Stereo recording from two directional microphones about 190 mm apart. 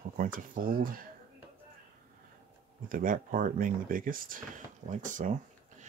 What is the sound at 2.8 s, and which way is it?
Speech, 45° right (ahead or behind).